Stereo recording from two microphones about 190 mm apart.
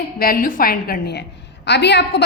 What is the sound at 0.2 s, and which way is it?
A woman's voice, 50° left (ahead or behind).